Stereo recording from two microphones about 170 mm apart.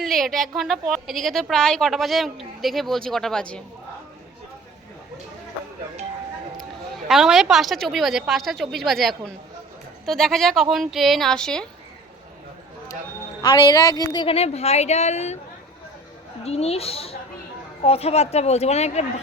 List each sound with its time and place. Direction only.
0.0 s a woman's voice: centre (ahead or behind)
7.1 s a woman's voice: centre (ahead or behind)
13.4 s a woman's voice: 25° left (ahead or behind); by 15.4 s 40° left (ahead or behind)
16.4 s a woman's voice: 35° left (ahead or behind)